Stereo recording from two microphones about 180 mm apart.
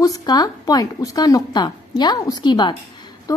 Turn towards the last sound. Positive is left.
turn(degrees=25)  # may be behind; listen again after turning